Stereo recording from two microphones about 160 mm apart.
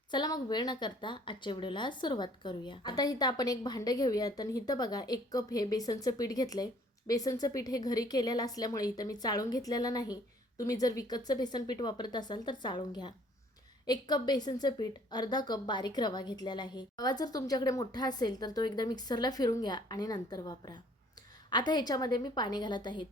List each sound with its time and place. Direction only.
0.1 s a woman's voice: 25° left (ahead or behind)